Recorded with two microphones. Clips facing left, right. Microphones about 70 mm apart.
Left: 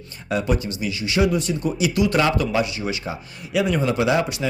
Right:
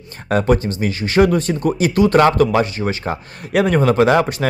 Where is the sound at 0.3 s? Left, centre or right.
Right.